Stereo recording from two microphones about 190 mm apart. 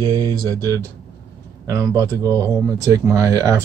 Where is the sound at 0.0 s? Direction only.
20° right (ahead or behind).